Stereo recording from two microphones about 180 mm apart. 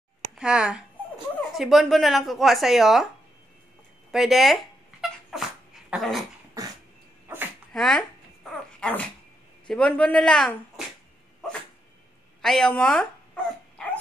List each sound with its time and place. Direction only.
0.4 s speech: 5° right (ahead or behind)
4.1 s speech: centre (ahead or behind)
5.3 s dog: centre (ahead or behind)
6.6 s dog: 20° right (ahead or behind)
7.7 s speech: centre (ahead or behind)
8.7 s dog: 5° left (ahead or behind)
9.7 s speech: 5° left (ahead or behind)
12.4 s dog: centre (ahead or behind)